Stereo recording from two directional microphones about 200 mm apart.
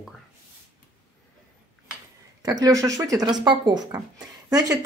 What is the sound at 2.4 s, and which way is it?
A woman's voice, 15° right (ahead or behind).